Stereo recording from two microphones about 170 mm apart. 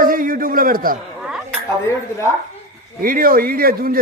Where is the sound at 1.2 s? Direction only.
5° right (ahead or behind).